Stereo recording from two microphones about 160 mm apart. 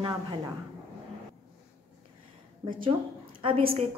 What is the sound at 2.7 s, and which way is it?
Speech, 30° right (ahead or behind).